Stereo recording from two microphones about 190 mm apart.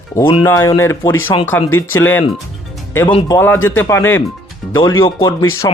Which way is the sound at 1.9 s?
90° left.